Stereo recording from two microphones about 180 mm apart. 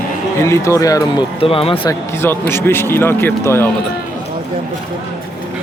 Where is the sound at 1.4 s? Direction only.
30° left (ahead or behind).